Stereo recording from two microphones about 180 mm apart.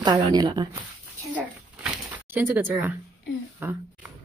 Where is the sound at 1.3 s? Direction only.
10° right (ahead or behind).